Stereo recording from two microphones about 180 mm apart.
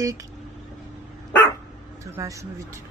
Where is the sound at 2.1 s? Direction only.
15° right (ahead or behind).